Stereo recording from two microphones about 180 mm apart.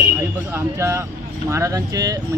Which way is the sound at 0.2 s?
10° right (ahead or behind).